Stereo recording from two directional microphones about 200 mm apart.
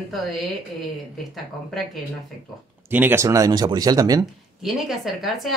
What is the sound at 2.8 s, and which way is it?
Speech, 10° right (ahead or behind).